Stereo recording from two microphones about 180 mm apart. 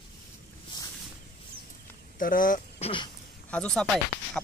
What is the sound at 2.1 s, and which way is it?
Speech, 50° left (ahead or behind).